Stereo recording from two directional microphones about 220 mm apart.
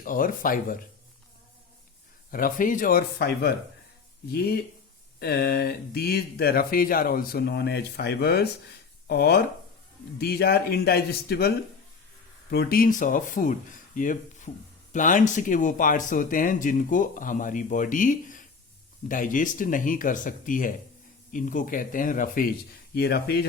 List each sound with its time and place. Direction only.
0.0 s speech: 40° left (ahead or behind)
2.3 s speech: 40° left (ahead or behind)